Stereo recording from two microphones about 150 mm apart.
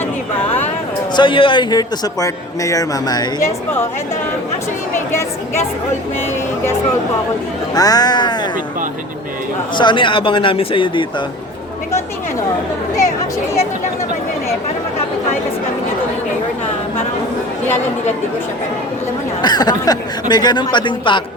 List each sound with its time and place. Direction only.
0.3 s a sound: 15° left (ahead or behind)
1.1 s a man's voice: 35° left (ahead or behind)
7.7 s a man's voice: 25° left (ahead or behind)
9.7 s speech: 30° left (ahead or behind)
19.4 s a man's voice: 30° left (ahead or behind)